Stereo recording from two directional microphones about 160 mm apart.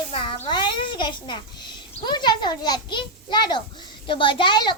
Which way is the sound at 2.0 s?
25° left (ahead or behind).